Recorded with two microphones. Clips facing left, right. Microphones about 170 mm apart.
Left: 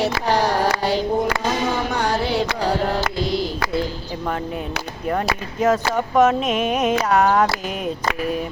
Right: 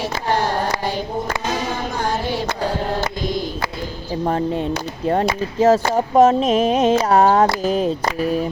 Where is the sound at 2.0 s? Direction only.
70° left (ahead or behind).